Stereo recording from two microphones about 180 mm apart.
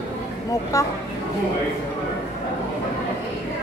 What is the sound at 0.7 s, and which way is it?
Speech, 20° left (ahead or behind).